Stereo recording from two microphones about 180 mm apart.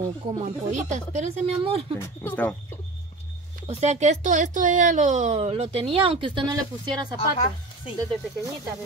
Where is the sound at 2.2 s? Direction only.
10° left (ahead or behind).